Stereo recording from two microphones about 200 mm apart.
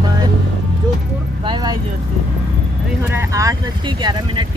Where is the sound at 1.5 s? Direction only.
20° right (ahead or behind).